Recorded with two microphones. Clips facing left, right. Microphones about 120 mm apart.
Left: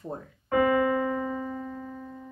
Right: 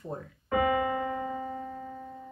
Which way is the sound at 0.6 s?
45° left (ahead or behind).